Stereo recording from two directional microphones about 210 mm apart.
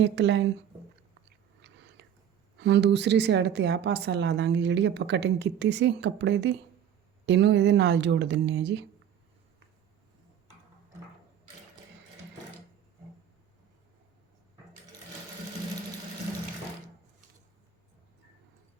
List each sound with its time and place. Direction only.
0.0 s a woman's voice: 55° right (ahead or behind)
1.6 s biting: 55° right (ahead or behind)
2.0 s whispering: 55° right (ahead or behind)
2.6 s a woman's voice: 55° right (ahead or behind)